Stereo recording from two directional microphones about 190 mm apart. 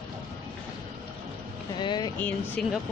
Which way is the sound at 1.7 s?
20° left (ahead or behind).